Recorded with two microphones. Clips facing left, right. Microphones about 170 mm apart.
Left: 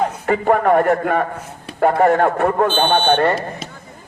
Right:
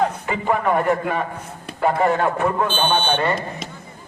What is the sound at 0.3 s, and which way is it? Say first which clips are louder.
A man's voice: left 6 dB; 50° left (ahead or behind).